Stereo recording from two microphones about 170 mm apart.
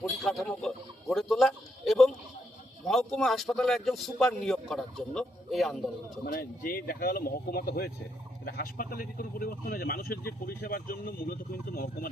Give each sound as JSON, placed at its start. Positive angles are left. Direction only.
{"t": 0.0, "sound": "speech", "side_deg": 0}
{"t": 1.1, "sound": "a sound", "side_deg": 0}
{"t": 3.2, "sound": "speech", "side_deg": 0}
{"t": 6.2, "sound": "speech", "side_deg": 60}